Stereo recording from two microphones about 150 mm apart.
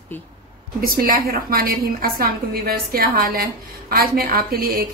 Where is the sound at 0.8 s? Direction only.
75° right (ahead or behind).